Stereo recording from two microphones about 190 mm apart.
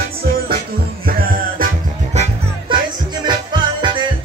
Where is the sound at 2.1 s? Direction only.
35° right (ahead or behind).